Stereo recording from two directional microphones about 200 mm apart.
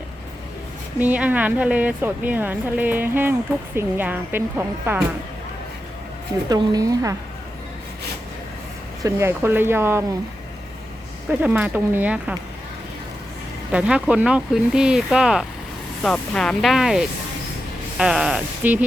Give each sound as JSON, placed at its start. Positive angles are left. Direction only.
{"t": 0.9, "sound": "speech", "side_deg": -10}
{"t": 6.5, "sound": "speech", "side_deg": -15}
{"t": 9.0, "sound": "speech", "side_deg": -15}
{"t": 11.3, "sound": "speech", "side_deg": -5}
{"t": 13.7, "sound": "speech", "side_deg": -5}